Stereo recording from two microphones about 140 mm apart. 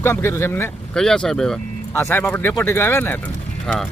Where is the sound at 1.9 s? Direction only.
15° left (ahead or behind).